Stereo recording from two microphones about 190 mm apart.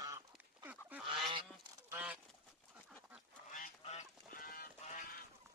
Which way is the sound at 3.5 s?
40° left (ahead or behind).